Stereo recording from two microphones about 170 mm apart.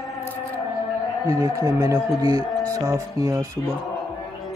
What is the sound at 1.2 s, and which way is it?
Speech, 15° right (ahead or behind).